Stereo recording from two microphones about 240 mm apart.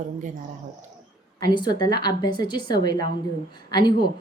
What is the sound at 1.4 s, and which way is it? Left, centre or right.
A woman's voice, centre.